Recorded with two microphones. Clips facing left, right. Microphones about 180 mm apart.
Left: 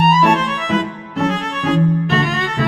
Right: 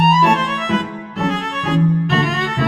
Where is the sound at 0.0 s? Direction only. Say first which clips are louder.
Left 1 dB; centre (ahead or behind).